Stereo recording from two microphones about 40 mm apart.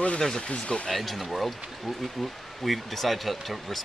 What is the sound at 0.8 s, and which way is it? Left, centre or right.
Speech, centre.